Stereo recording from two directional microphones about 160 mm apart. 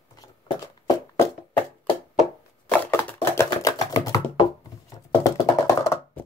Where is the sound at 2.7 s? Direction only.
10° left (ahead or behind).